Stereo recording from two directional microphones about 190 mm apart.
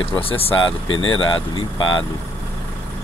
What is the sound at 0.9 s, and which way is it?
Speech, 90° left.